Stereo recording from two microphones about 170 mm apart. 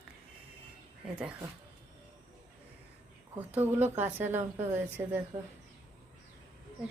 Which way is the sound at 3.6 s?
10° right (ahead or behind).